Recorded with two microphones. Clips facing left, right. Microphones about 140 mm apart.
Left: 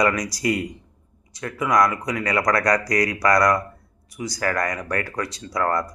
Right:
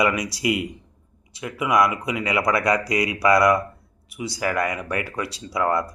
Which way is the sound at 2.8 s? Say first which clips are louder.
Left 1 dB; 25° right (ahead or behind).